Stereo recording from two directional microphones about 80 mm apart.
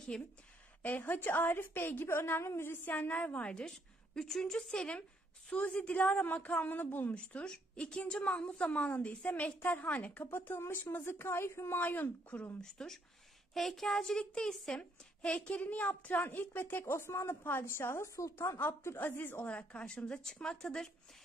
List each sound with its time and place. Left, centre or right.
0.1 s a woman's voice: centre
0.8 s a woman's voice: left
12.5 s a woman's voice: centre; by 18.6 s left
18.6 s a woman's voice: left; by 20.9 s centre